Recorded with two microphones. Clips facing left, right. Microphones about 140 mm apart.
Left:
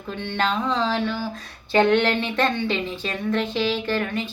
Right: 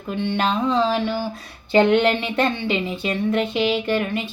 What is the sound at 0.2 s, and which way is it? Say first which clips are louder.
A woman's voice: right 3 dB; 10° right (ahead or behind).